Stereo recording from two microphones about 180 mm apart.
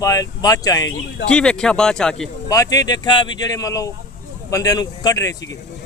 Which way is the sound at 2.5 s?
20° left (ahead or behind).